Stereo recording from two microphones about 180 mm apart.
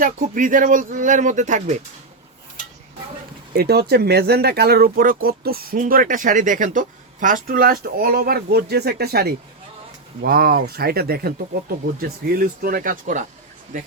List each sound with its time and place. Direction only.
0.0 s speech: 50° right (ahead or behind)
3.5 s speech: 60° right (ahead or behind)